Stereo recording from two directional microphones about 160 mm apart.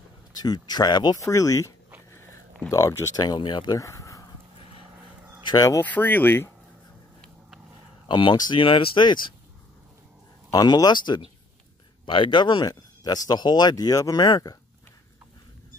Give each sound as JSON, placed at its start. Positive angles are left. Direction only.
{"t": 0.3, "sound": "speech", "side_deg": 25}
{"t": 2.7, "sound": "speech", "side_deg": 20}
{"t": 5.5, "sound": "speech", "side_deg": 20}
{"t": 8.1, "sound": "speech", "side_deg": 30}
{"t": 10.5, "sound": "speech", "side_deg": 25}